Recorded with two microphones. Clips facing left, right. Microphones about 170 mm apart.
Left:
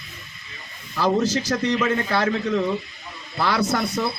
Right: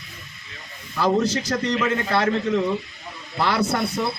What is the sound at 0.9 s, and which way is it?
Speech, centre (ahead or behind).